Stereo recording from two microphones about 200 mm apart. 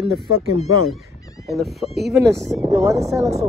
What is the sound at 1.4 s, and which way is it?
Speech, centre (ahead or behind).